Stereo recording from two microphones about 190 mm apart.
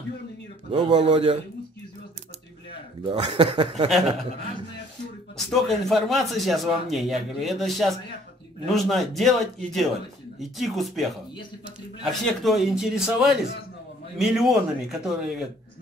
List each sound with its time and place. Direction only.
0.7 s speech: 30° right (ahead or behind)
3.0 s speech: 25° right (ahead or behind)
5.5 s speech: centre (ahead or behind)
10.4 s speech: centre (ahead or behind)